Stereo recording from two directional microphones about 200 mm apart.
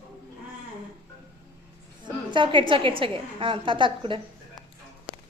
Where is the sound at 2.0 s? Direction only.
25° right (ahead or behind).